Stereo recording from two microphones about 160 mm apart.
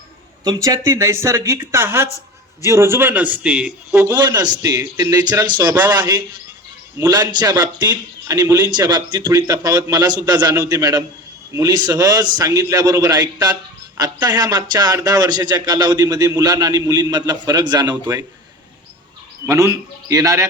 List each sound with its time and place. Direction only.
0.4 s a man's voice: 20° right (ahead or behind)
4.0 s a man's voice: 25° right (ahead or behind)
5.4 s a man's voice: 10° right (ahead or behind)
5.8 s a man's voice: 25° right (ahead or behind)
19.5 s a man's voice: 20° right (ahead or behind)